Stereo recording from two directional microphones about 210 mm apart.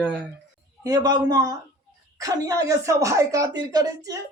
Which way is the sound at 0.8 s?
15° right (ahead or behind).